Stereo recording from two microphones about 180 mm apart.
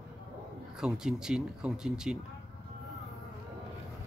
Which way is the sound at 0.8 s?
5° right (ahead or behind).